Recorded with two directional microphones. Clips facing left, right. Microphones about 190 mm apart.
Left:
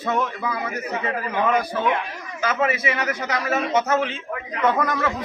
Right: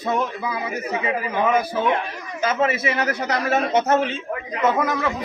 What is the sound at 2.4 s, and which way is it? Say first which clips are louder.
A man's voice: right 2 dB; 25° right (ahead or behind).